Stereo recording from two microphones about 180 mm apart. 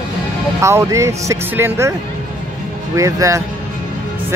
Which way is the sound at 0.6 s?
15° right (ahead or behind).